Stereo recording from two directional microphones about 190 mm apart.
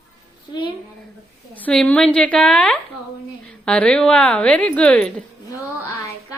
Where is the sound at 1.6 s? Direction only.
10° left (ahead or behind).